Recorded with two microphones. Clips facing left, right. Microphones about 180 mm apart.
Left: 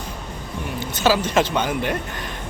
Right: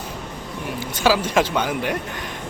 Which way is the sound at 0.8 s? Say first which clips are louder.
Even; 10° right (ahead or behind).